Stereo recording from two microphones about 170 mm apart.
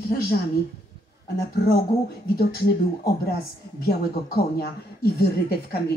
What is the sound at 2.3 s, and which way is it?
Speech, 65° left (ahead or behind).